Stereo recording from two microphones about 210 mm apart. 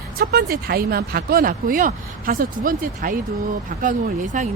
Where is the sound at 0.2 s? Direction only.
50° right (ahead or behind).